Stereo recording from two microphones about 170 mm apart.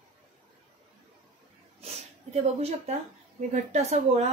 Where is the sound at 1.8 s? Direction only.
35° right (ahead or behind).